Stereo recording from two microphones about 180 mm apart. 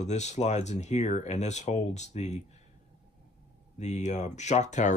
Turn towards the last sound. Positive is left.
turn(degrees=40)  # may be behind; listen again after turning